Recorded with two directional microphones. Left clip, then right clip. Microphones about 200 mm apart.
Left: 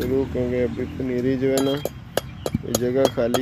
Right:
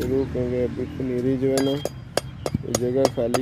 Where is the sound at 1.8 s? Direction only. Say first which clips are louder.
Even; 20° right (ahead or behind).